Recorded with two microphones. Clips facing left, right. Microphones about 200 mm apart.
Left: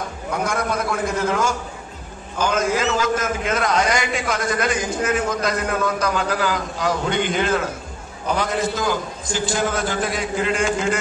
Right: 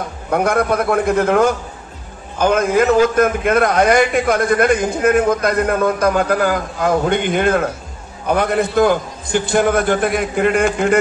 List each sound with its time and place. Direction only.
0.3 s a man's voice: 60° right (ahead or behind)